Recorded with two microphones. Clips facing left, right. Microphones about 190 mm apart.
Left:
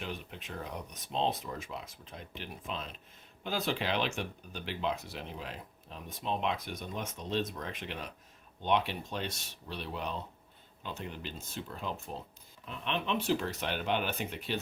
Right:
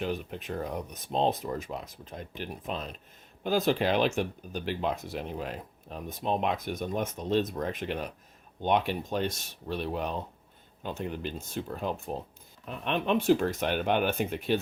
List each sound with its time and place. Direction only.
0.0 s speech: 45° right (ahead or behind)